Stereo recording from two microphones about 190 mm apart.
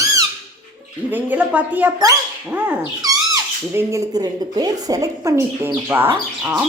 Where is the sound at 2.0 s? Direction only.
20° right (ahead or behind).